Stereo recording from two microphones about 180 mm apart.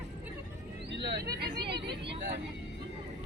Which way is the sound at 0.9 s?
75° right (ahead or behind).